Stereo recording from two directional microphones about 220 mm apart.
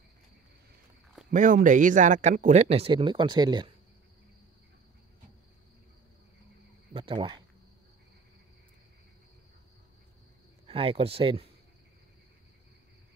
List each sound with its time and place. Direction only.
1.3 s speech: 35° right (ahead or behind); by 3.7 s 20° right (ahead or behind)
6.9 s a sound: 25° right (ahead or behind)
10.7 s speech: 25° right (ahead or behind)